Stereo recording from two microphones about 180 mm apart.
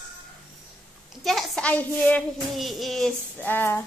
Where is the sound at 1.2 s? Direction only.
Centre (ahead or behind).